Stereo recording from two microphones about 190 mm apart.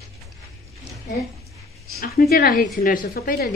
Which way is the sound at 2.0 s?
55° left (ahead or behind).